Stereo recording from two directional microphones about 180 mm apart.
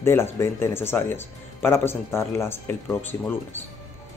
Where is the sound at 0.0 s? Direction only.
15° left (ahead or behind).